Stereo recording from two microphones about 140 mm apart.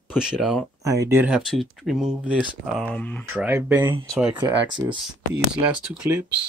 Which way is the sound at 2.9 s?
10° left (ahead or behind).